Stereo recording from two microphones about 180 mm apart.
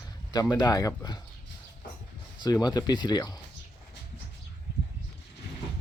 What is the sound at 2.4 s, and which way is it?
Speech, 20° left (ahead or behind).